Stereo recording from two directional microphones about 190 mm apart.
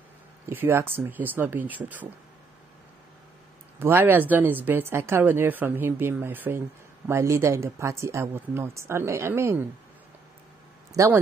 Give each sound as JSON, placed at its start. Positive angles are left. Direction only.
{"t": 0.5, "sound": "speech", "side_deg": -10}
{"t": 3.8, "sound": "speech", "side_deg": -10}
{"t": 10.9, "sound": "speech", "side_deg": -15}